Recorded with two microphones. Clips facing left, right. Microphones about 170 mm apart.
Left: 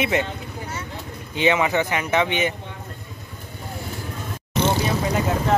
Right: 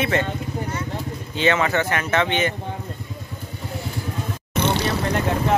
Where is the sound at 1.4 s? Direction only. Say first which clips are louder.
Even; 15° left (ahead or behind).